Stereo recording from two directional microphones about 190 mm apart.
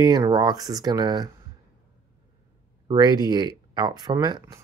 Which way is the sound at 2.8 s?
20° right (ahead or behind).